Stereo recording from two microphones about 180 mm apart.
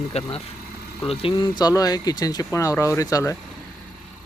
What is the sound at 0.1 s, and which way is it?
Speech, 35° left (ahead or behind).